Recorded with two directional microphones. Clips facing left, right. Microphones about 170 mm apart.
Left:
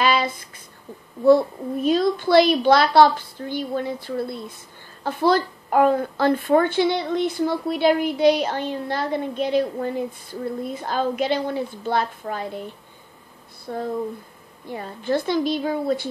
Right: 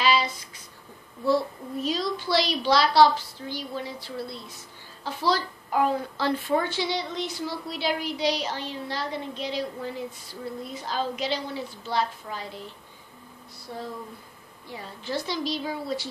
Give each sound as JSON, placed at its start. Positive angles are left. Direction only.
{"t": 0.0, "sound": "a sound", "side_deg": 55}
{"t": 1.2, "sound": "a woman's voice", "side_deg": 55}
{"t": 13.7, "sound": "a woman's voice", "side_deg": 55}